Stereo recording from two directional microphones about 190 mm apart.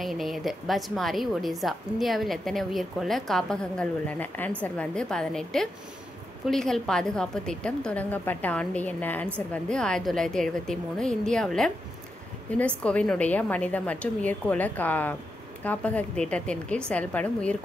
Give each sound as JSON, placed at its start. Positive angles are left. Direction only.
{"t": 0.0, "sound": "a woman's voice", "side_deg": 0}